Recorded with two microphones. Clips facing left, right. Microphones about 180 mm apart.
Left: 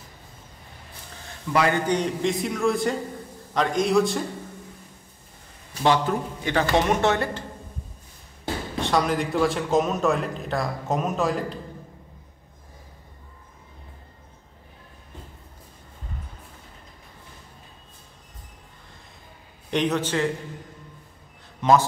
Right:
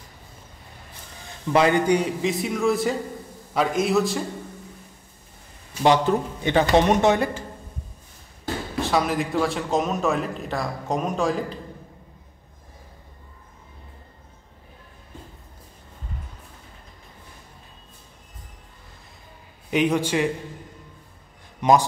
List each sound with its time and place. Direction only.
1.5 s a man's voice: 20° right (ahead or behind)
1.9 s a man's voice: 5° right (ahead or behind)
5.8 s speech: 20° right (ahead or behind)
8.8 s a man's voice: centre (ahead or behind)
19.7 s speech: 10° right (ahead or behind)
21.5 s a man's voice: 15° right (ahead or behind)